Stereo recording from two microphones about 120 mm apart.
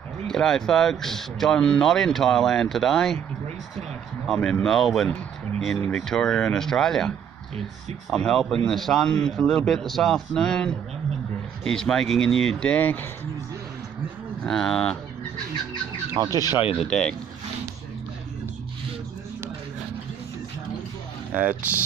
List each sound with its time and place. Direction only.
0.3 s speech: 5° left (ahead or behind)
4.3 s speech: 10° left (ahead or behind)
14.4 s speech: 5° left (ahead or behind)
16.1 s speech: 30° right (ahead or behind)
16.7 s speech: 5° left (ahead or behind)
21.3 s speech: 10° right (ahead or behind)